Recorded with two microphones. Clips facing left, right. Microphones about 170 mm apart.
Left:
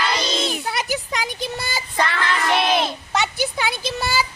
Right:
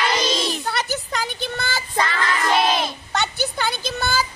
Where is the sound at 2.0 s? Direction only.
65° left (ahead or behind).